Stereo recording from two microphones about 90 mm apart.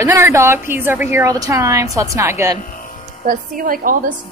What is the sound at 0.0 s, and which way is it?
A woman's voice, 30° right (ahead or behind).